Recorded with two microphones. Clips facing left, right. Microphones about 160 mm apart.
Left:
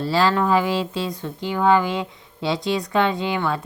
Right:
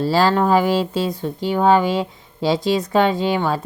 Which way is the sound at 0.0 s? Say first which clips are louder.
Right 3 dB; 40° right (ahead or behind).